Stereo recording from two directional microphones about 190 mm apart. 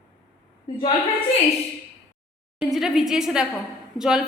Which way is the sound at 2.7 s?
5° right (ahead or behind).